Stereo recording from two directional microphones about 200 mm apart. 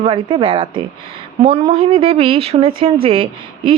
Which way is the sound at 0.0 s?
25° right (ahead or behind).